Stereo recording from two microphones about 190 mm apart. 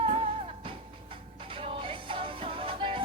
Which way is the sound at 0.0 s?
30° right (ahead or behind).